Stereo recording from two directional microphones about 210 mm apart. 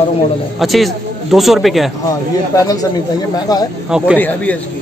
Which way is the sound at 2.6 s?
15° left (ahead or behind).